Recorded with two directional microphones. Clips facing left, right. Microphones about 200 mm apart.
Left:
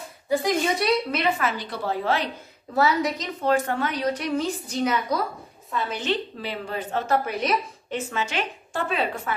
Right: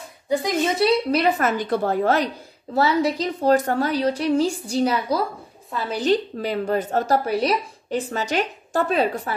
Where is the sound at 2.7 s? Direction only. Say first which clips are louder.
Right 3 dB; 30° right (ahead or behind).